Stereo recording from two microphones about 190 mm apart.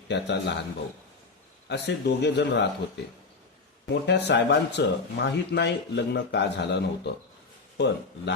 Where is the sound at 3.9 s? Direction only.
65° left (ahead or behind).